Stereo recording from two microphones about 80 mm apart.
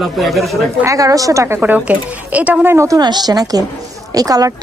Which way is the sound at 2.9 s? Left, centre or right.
Right.